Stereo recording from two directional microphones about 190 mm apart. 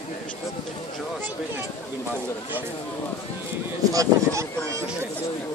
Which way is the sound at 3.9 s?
15° right (ahead or behind).